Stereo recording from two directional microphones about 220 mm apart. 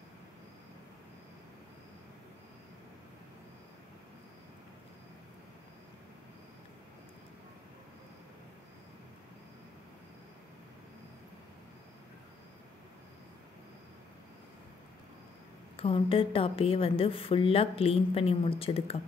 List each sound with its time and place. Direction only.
15.7 s a woman's voice: 25° left (ahead or behind)